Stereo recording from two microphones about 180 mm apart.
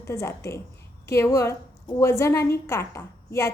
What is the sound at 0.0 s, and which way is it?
A woman's voice, 15° left (ahead or behind).